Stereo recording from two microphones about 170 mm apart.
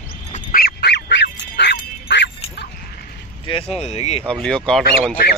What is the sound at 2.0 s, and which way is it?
Quack, 90° left.